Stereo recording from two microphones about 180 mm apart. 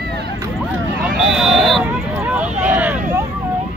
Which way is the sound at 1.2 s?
5° right (ahead or behind).